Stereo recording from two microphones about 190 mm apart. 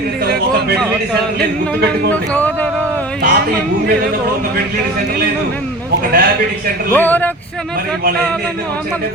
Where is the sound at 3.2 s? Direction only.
55° right (ahead or behind).